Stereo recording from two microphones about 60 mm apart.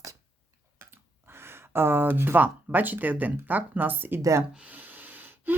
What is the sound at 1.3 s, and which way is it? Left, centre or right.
Speech, right.